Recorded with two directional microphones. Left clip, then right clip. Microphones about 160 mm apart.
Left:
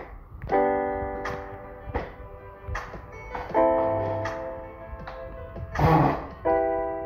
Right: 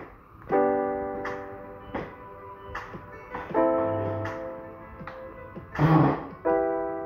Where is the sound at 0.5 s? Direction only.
40° right (ahead or behind).